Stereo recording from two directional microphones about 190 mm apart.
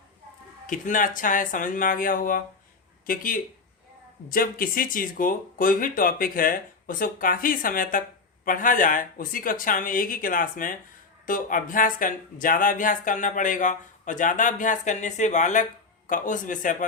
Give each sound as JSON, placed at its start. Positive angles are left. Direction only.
{"t": 0.7, "sound": "speech", "side_deg": 45}